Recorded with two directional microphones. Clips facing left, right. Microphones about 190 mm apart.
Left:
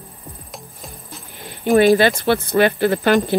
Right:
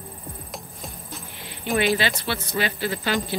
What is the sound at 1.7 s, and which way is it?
Speech, 45° left (ahead or behind).